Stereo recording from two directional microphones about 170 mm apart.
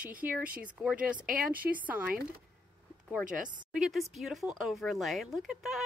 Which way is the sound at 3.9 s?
Centre (ahead or behind).